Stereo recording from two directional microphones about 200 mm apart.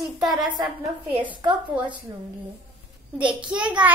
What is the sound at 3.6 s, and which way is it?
Speech, 5° right (ahead or behind).